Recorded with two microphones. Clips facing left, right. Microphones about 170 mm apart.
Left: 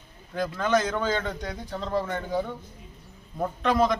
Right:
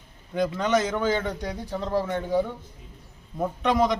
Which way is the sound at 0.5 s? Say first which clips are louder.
Left 2 dB; 20° right (ahead or behind).